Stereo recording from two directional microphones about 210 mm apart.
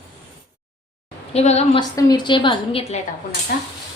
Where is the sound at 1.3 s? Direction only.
30° left (ahead or behind).